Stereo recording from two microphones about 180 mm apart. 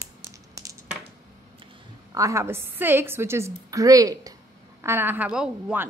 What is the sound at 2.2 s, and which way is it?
A woman's voice, 15° right (ahead or behind).